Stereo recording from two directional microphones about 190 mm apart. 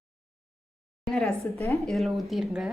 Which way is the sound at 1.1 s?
Centre (ahead or behind).